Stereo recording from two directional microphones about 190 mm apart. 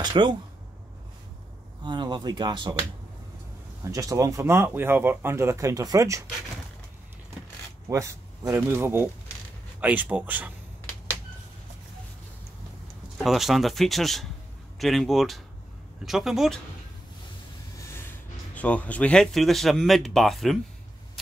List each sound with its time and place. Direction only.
0.0 s speech: 25° right (ahead or behind)
1.8 s speech: 25° right (ahead or behind)
3.8 s speech: 15° right (ahead or behind)
7.9 s speech: 15° right (ahead or behind)
13.2 s speech: centre (ahead or behind)
17.7 s a sound: 15° left (ahead or behind)
18.5 s speech: 5° left (ahead or behind)